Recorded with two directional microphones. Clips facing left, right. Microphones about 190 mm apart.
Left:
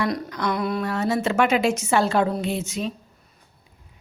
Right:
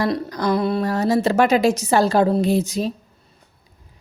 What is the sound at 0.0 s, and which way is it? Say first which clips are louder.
A woman's voice: right 4 dB; 35° right (ahead or behind).